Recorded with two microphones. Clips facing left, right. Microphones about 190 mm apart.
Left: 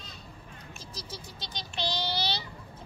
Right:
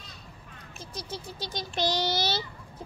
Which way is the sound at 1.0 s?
50° right (ahead or behind).